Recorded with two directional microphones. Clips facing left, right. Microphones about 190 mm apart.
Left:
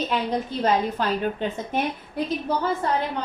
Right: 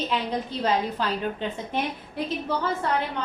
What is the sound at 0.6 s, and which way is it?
A woman's voice, 50° left (ahead or behind).